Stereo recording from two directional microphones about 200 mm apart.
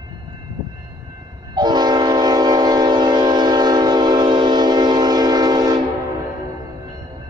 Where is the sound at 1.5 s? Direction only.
20° right (ahead or behind).